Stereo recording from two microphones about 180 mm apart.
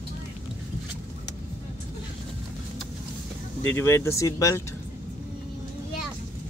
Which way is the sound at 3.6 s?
15° left (ahead or behind).